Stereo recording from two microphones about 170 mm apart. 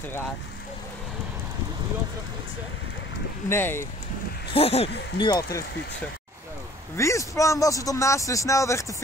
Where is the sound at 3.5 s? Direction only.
15° left (ahead or behind).